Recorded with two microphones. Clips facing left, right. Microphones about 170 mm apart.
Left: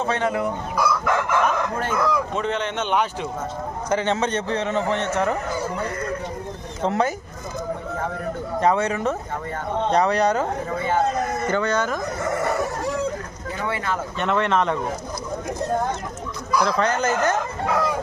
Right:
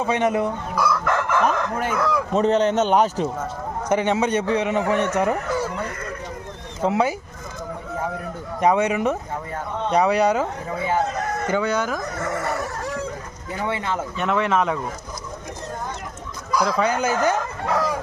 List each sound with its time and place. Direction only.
0.0 s chicken: 15° right (ahead or behind)
0.8 s crowing: centre (ahead or behind)
1.8 s speech: 10° right (ahead or behind)
2.3 s a man's voice: 40° right (ahead or behind)
3.8 s a man's voice: 15° right (ahead or behind)
6.8 s speech: 5° right (ahead or behind)
8.6 s a man's voice: 15° right (ahead or behind)
11.4 s a man's voice: 10° right (ahead or behind)
13.7 s chicken: 20° right (ahead or behind)
14.2 s speech: 5° right (ahead or behind)
16.6 s a man's voice: 5° right (ahead or behind)